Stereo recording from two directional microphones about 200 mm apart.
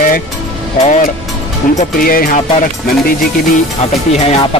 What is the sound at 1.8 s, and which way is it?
Speech, 45° left (ahead or behind).